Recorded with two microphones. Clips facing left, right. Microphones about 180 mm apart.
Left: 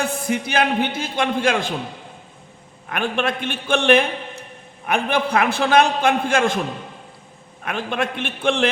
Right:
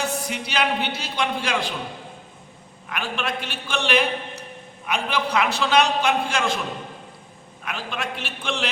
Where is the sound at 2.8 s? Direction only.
50° left (ahead or behind).